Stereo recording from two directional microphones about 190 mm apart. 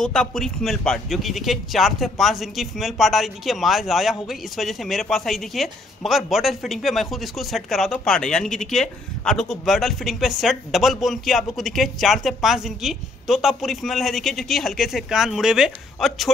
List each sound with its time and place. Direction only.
0.0 s a man's voice: 5° left (ahead or behind)